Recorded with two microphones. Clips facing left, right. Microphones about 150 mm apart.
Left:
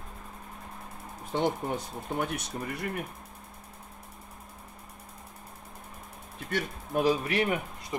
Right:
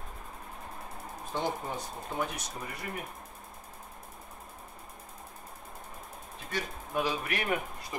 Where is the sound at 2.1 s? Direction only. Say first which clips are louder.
Left 3 dB; 60° left (ahead or behind).